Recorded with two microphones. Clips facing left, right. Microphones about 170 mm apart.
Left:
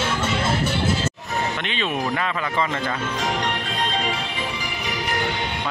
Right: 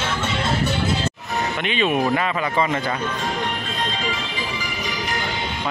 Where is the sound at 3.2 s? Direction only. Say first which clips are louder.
Left 1 dB; 75° left (ahead or behind).